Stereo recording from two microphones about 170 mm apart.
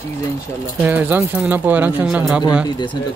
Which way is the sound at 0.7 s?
10° right (ahead or behind).